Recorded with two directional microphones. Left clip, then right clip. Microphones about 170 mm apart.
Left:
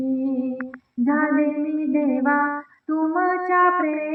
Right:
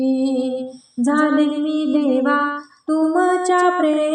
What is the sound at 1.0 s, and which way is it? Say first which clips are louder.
Female singing: right 4 dB; 30° right (ahead or behind).